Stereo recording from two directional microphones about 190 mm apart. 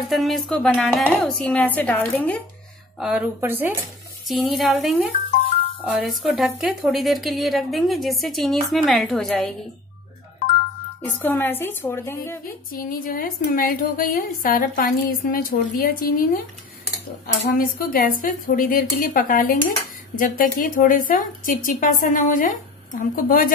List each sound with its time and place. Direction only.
0.1 s a woman's voice: centre (ahead or behind)
3.0 s speech: 5° right (ahead or behind)
4.3 s a woman's voice: centre (ahead or behind)
11.1 s speech: 10° left (ahead or behind)
12.7 s a woman's voice: 50° left (ahead or behind)
17.5 s a woman's voice: 50° left (ahead or behind)